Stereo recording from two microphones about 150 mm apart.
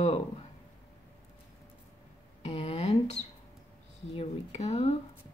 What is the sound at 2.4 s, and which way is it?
Speech, 35° left (ahead or behind).